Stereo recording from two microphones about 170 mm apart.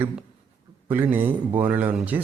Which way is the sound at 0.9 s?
10° right (ahead or behind).